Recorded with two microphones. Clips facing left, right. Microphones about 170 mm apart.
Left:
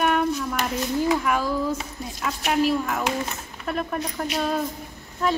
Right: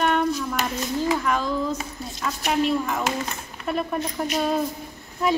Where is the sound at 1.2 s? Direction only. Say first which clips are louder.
Even; 10° left (ahead or behind).